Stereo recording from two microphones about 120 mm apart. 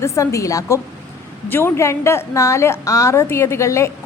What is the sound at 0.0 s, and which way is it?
A woman's voice, 25° left (ahead or behind).